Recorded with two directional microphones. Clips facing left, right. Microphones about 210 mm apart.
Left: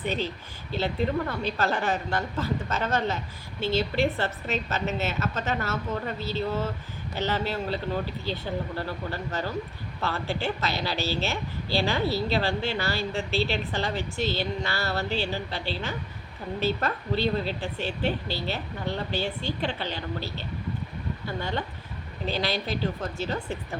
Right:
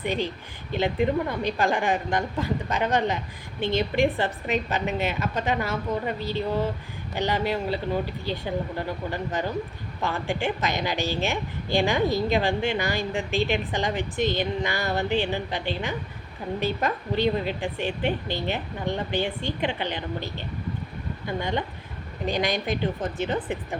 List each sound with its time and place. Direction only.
0.0 s a woman's voice: 15° right (ahead or behind)